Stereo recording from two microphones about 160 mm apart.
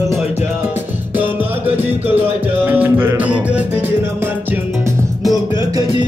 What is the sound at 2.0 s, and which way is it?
Music, 10° right (ahead or behind).